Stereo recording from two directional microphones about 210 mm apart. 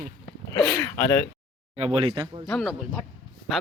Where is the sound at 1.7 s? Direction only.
25° right (ahead or behind).